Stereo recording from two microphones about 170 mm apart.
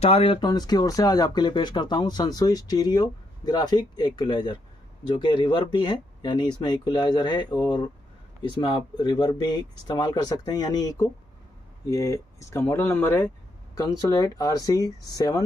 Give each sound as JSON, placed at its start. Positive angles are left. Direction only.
{"t": 0.0, "sound": "speech", "side_deg": 35}
{"t": 0.5, "sound": "speech", "side_deg": 25}